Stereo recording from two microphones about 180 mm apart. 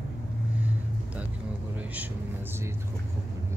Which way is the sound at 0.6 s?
10° right (ahead or behind).